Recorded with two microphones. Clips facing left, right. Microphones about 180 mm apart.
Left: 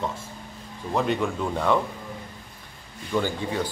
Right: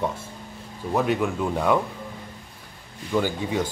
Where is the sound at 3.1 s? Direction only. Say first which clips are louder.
Right 2 dB; 10° right (ahead or behind).